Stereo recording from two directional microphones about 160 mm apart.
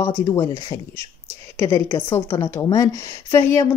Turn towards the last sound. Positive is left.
turn(degrees=15)  # may be behind; listen again after turning